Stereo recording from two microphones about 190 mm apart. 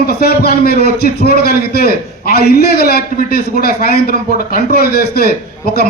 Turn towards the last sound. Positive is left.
turn(degrees=55)  # may be behind; listen again after turning